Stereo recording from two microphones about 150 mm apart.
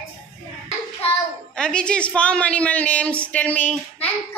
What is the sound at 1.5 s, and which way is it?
A woman's voice, 5° left (ahead or behind).